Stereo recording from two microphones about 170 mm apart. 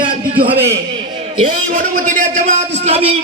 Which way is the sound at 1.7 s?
50° right (ahead or behind).